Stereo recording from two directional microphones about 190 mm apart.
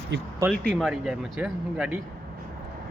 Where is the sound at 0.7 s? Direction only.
5° right (ahead or behind).